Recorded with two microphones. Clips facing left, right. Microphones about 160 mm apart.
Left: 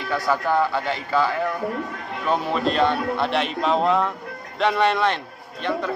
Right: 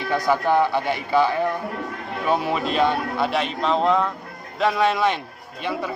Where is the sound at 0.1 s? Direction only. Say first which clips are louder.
Right 2 dB; 15° right (ahead or behind).